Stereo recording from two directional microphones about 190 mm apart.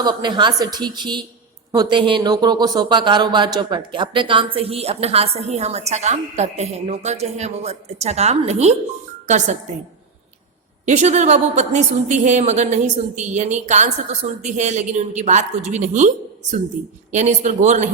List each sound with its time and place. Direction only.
0.0 s a woman's voice: 25° right (ahead or behind); by 9.6 s 40° right (ahead or behind)
10.8 s speech: 40° right (ahead or behind)